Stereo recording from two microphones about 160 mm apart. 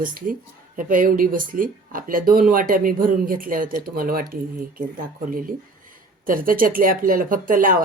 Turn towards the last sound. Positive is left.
turn(degrees=-60)  # may be behind; listen again after turning